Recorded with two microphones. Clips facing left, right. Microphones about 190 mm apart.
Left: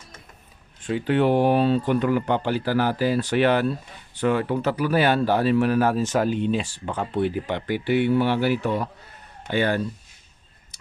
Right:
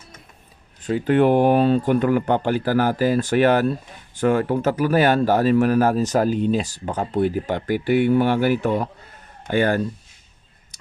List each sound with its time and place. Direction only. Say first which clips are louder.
0.8 s speech: right 4 dB; 40° right (ahead or behind)